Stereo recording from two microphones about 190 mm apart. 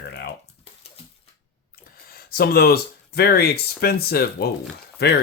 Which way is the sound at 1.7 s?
50° left (ahead or behind).